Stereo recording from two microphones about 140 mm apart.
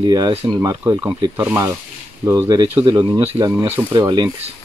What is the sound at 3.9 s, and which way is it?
Speech, 30° right (ahead or behind).